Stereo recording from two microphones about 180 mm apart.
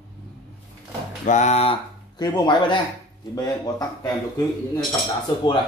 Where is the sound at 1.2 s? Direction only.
40° left (ahead or behind); by 4.1 s 20° left (ahead or behind).